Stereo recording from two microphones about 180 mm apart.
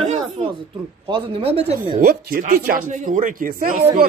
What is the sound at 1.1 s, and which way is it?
Speech, 30° right (ahead or behind).